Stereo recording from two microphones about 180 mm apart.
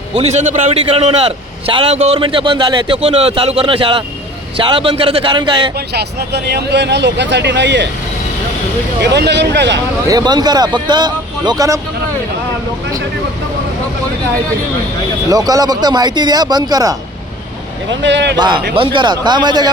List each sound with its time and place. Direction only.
0.1 s a man's voice: 35° right (ahead or behind)
5.7 s speech: 65° right (ahead or behind)
9.0 s speech: 70° right (ahead or behind)
10.1 s speech: 20° right (ahead or behind)
15.3 s speech: 20° right (ahead or behind)
18.0 s a man's voice: 85° right
18.3 s speech: 25° right (ahead or behind)